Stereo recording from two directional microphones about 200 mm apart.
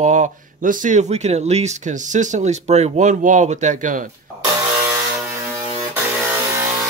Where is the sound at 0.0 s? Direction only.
35° right (ahead or behind).